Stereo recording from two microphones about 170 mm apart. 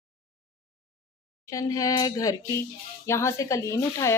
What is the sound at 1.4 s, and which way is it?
Speech, 20° left (ahead or behind).